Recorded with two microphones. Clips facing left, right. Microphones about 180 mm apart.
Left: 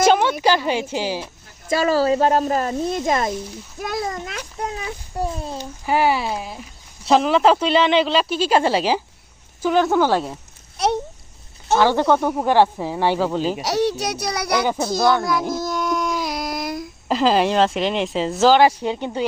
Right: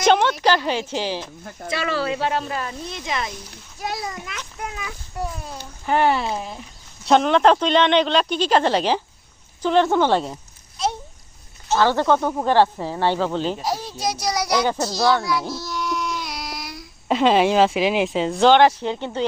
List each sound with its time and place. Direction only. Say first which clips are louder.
0.0 s a sound: left 1 dB; 5° left (ahead or behind)
0.4 s speech: left 1 dB; 10° left (ahead or behind)
1.7 s speech: left 7 dB; 40° left (ahead or behind)
4.4 s a child's voice: left 4 dB; 35° left (ahead or behind)
5.8 s speech: even; 5° left (ahead or behind)
11.8 s speech: left 1 dB; 15° left (ahead or behind)
13.6 s a child's voice: left 6 dB; 75° left (ahead or behind); by 14.6 s 60° left (ahead or behind)
14.8 s a sound: left 2 dB; 50° left (ahead or behind)
17.1 s speech: right 1 dB; centre (ahead or behind)